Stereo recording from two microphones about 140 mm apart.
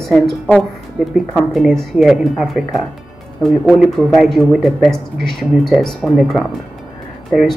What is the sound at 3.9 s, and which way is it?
A woman's voice, centre (ahead or behind).